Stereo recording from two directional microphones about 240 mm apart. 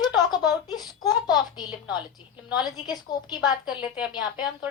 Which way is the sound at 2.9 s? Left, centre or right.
Centre.